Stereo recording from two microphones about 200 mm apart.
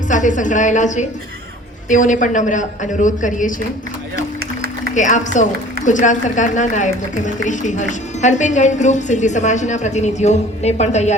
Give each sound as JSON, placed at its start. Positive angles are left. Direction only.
{"t": 0.1, "sound": "a woman's voice", "side_deg": 40}
{"t": 4.9, "sound": "a woman's voice", "side_deg": 40}